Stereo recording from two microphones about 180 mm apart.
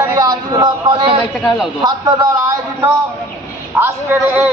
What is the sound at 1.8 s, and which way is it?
A man's voice, 20° right (ahead or behind).